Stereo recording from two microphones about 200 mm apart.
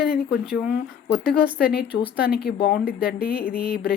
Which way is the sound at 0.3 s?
5° right (ahead or behind).